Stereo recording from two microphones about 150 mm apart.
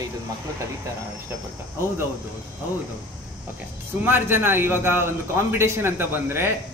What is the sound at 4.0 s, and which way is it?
A man's voice, 15° right (ahead or behind).